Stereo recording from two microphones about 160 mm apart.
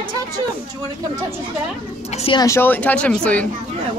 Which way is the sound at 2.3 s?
20° left (ahead or behind).